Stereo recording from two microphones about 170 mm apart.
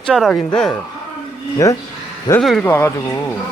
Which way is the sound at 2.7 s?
15° left (ahead or behind).